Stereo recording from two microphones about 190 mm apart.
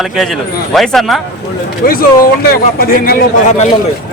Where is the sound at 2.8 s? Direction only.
50° left (ahead or behind).